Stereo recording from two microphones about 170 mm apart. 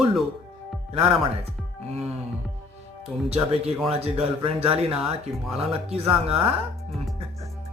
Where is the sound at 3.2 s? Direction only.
35° right (ahead or behind).